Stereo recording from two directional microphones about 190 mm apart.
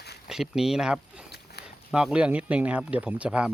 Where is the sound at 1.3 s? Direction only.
60° left (ahead or behind).